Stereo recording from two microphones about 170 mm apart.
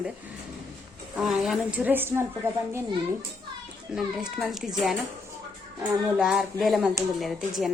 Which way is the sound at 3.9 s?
5° right (ahead or behind).